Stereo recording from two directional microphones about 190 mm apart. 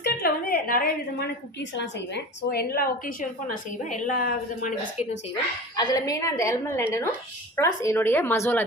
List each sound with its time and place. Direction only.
0.0 s a sound: 50° left (ahead or behind)
1.8 s a woman's voice: 60° left (ahead or behind); by 5.0 s 45° left (ahead or behind)
5.7 s a woman's voice: 20° left (ahead or behind)